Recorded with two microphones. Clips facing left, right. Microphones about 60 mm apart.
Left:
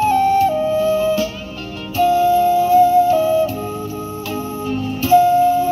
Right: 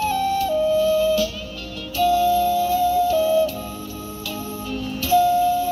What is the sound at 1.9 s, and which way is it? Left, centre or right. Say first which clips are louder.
Music: left 4 dB; left.